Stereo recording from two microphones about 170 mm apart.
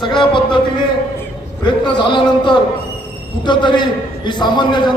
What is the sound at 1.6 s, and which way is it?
A man's voice, 25° left (ahead or behind).